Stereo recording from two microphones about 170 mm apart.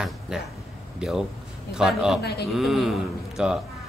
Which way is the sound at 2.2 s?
75° left (ahead or behind).